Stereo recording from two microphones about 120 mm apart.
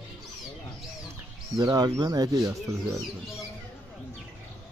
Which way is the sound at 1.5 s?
35° right (ahead or behind).